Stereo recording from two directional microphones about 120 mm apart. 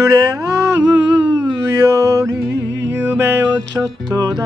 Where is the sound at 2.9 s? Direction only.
20° right (ahead or behind).